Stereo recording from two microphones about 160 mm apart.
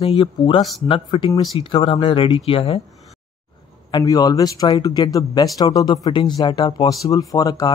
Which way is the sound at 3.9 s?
25° left (ahead or behind).